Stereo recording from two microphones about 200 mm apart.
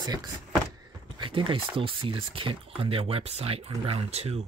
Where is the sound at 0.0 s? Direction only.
20° right (ahead or behind).